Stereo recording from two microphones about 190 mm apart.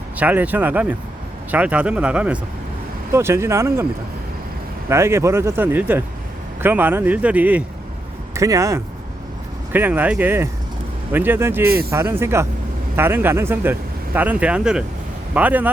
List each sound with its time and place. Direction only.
0.2 s speech: 10° right (ahead or behind)
4.9 s speech: 15° right (ahead or behind)